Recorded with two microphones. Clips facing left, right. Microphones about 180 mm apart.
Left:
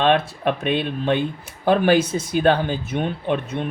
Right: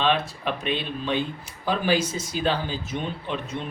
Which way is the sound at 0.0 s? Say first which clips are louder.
Left 6 dB; 55° left (ahead or behind).